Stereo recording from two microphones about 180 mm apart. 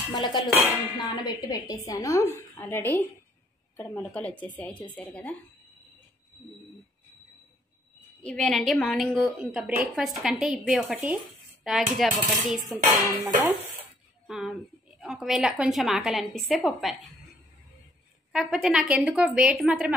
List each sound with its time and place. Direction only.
0.1 s a woman's voice: 25° left (ahead or behind); by 5.3 s 10° left (ahead or behind)
8.2 s a woman's voice: 5° left (ahead or behind)
18.3 s a woman's voice: 5° right (ahead or behind)